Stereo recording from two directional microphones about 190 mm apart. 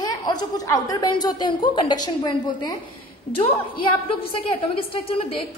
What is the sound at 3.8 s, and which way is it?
A woman's voice, 30° left (ahead or behind).